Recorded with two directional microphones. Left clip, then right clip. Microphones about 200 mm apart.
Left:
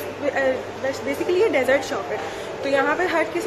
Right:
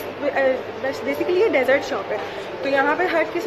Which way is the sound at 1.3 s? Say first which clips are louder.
Right 1 dB; centre (ahead or behind).